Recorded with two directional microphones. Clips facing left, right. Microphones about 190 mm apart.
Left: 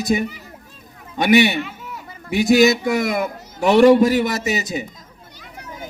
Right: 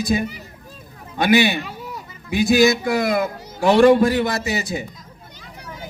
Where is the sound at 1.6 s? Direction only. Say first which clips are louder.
Even; 35° right (ahead or behind).